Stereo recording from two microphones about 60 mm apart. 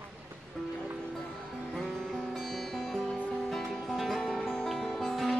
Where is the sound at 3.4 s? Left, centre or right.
Centre.